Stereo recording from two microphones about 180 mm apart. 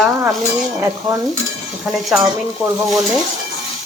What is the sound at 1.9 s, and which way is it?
Speech, centre (ahead or behind).